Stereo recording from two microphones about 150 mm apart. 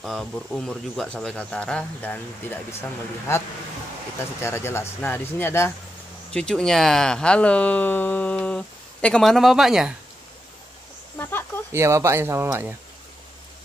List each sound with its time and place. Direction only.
0.0 s speech: centre (ahead or behind)
4.2 s speech: 15° left (ahead or behind)
6.3 s speech: 5° left (ahead or behind)
11.1 s a sound: 15° left (ahead or behind)
11.7 s speech: 20° right (ahead or behind)